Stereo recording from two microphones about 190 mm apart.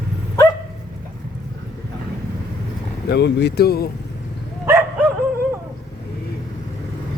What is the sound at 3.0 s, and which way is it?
Speech, 65° left (ahead or behind).